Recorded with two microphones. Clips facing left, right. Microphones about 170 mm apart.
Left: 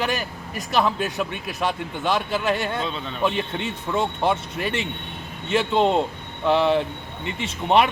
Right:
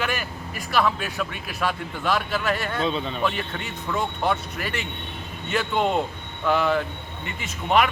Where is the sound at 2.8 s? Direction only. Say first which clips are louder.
Right 4 dB; centre (ahead or behind).